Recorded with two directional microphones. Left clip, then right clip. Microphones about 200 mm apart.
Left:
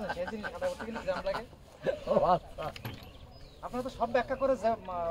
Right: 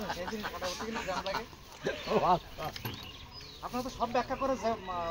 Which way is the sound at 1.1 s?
15° left (ahead or behind).